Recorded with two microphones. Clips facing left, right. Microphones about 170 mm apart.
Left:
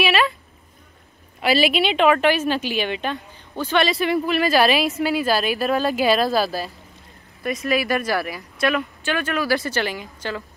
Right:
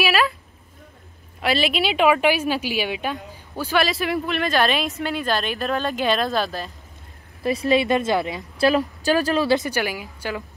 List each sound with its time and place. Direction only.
0.0 s a sound: centre (ahead or behind)
1.4 s speech: centre (ahead or behind)
7.4 s speech: 30° right (ahead or behind)
9.7 s a woman's voice: 10° right (ahead or behind)